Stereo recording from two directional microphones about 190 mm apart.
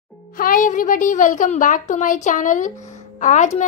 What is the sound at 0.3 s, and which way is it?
A woman's voice, 45° left (ahead or behind).